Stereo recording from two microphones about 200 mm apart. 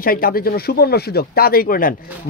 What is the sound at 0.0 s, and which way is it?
Speech, 45° left (ahead or behind).